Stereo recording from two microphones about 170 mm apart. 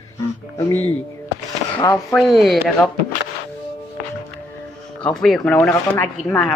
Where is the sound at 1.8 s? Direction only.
20° left (ahead or behind).